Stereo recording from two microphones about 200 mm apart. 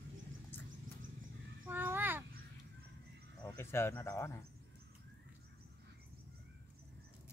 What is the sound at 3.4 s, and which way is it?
Speech, 10° left (ahead or behind).